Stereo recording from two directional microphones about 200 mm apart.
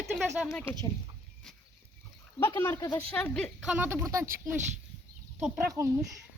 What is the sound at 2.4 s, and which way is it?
Speech, 15° left (ahead or behind).